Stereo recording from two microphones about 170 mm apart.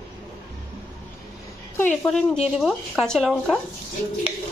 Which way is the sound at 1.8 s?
5° left (ahead or behind).